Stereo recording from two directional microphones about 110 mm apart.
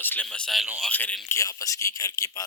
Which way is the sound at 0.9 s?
15° left (ahead or behind).